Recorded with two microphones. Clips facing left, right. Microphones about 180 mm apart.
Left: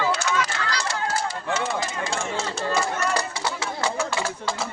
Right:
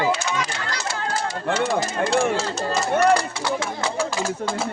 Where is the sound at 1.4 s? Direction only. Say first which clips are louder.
Right 4 dB; 55° right (ahead or behind).